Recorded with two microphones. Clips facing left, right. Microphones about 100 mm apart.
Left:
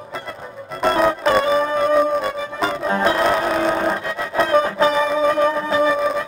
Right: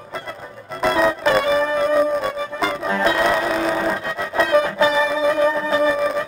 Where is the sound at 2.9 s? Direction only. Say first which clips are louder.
Left 1 dB; 35° left (ahead or behind).